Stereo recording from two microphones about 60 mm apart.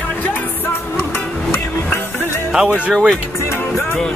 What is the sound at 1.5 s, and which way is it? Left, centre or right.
Music, left.